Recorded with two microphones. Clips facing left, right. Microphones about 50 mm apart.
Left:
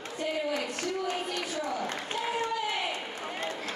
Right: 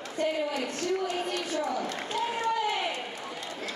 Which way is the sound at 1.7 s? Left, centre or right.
Left.